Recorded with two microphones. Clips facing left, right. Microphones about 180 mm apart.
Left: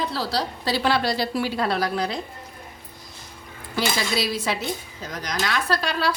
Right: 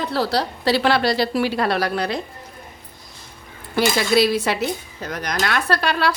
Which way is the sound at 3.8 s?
60° right (ahead or behind).